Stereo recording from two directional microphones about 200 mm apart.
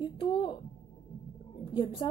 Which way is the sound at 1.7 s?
25° left (ahead or behind).